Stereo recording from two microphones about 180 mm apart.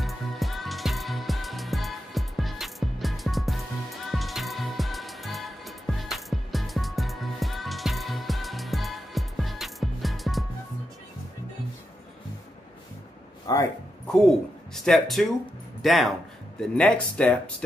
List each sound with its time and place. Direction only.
0.0 s music: centre (ahead or behind)
13.5 s speech: 20° left (ahead or behind)
14.0 s speech: 5° left (ahead or behind)